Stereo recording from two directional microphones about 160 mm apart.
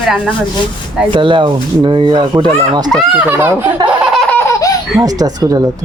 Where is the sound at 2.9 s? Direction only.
5° right (ahead or behind).